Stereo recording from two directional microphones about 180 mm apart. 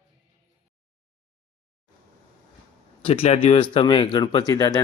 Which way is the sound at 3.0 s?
35° left (ahead or behind).